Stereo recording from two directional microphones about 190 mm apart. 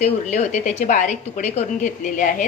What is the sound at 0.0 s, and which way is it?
A woman's voice, 35° left (ahead or behind).